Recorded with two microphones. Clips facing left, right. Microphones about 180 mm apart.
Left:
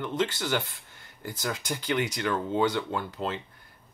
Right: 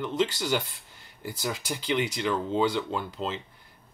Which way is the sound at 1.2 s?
10° right (ahead or behind).